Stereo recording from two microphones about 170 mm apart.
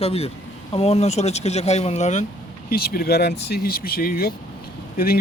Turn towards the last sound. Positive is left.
turn(degrees=60)  # may be behind; listen again after turning